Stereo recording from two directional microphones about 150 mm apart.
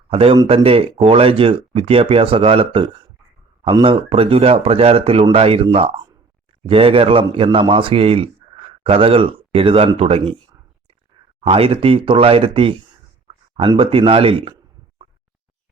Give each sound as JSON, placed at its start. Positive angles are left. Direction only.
{"t": 0.1, "sound": "a man's voice", "side_deg": -40}